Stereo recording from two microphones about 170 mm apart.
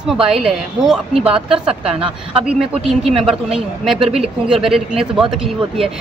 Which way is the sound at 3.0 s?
35° right (ahead or behind).